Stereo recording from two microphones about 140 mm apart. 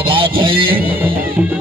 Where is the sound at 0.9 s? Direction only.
15° right (ahead or behind).